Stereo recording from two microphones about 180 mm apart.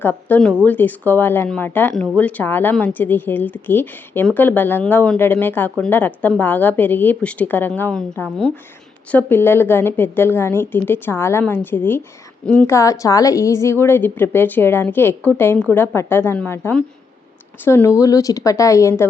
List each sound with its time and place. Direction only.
0.0 s a woman's voice: 10° left (ahead or behind)